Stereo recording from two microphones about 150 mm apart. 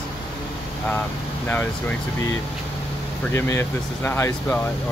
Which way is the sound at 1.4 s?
10° left (ahead or behind).